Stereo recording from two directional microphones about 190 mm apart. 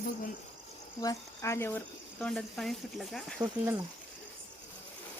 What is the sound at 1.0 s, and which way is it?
Speech, 15° left (ahead or behind).